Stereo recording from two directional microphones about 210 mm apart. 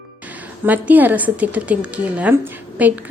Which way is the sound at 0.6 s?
10° right (ahead or behind).